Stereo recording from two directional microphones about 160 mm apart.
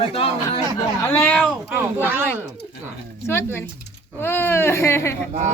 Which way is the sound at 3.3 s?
15° left (ahead or behind).